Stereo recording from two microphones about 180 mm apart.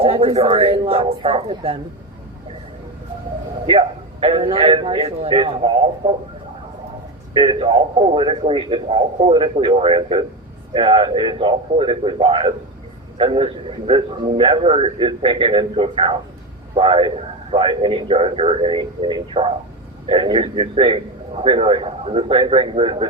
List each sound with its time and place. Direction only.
0.0 s a man's voice: 30° right (ahead or behind)
3.7 s a man's voice: 30° right (ahead or behind)
7.3 s a man's voice: 30° right (ahead or behind)